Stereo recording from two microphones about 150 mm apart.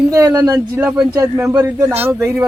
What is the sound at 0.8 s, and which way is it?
Speech, 10° right (ahead or behind).